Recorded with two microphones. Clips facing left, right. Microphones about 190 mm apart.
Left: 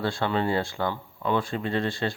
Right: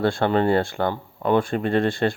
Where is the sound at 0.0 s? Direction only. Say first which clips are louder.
Right 6 dB; 55° right (ahead or behind).